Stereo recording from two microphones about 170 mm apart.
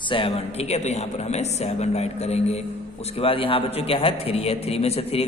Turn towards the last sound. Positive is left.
turn(degrees=35)  # may be behind; listen again after turning